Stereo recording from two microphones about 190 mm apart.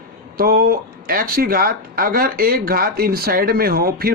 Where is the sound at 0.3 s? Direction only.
55° right (ahead or behind).